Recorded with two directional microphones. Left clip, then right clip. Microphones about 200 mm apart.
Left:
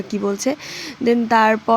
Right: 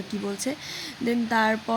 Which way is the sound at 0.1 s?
30° left (ahead or behind).